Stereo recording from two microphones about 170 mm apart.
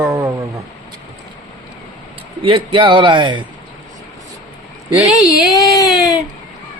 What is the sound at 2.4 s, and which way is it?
A man's voice, 30° right (ahead or behind).